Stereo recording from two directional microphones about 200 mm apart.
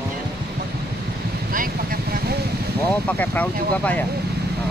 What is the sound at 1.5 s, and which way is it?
Speech, 45° right (ahead or behind).